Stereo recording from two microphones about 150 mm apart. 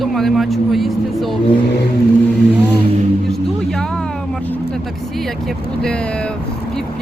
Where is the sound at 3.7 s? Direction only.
5° left (ahead or behind).